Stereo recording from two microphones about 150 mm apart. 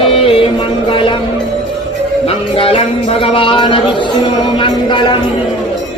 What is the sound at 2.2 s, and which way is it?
Music, 40° left (ahead or behind).